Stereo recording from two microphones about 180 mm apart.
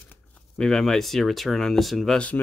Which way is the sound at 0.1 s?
5° left (ahead or behind).